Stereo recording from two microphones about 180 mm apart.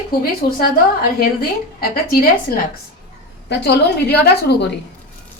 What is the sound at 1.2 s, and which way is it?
Speech, 55° left (ahead or behind).